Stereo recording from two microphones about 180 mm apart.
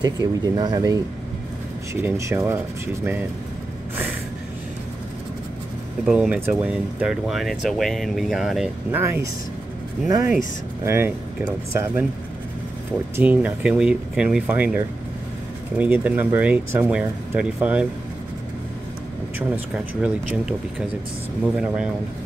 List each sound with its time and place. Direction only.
0.0 s speech: 25° right (ahead or behind)
6.0 s speech: 5° right (ahead or behind)
9.0 s speech: 15° right (ahead or behind)
13.1 s speech: 10° right (ahead or behind)
15.8 s speech: 10° right (ahead or behind)
19.3 s speech: 10° right (ahead or behind)
21.5 s speech: 5° right (ahead or behind)